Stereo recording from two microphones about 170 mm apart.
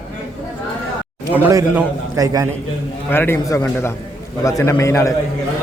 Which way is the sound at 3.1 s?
15° left (ahead or behind).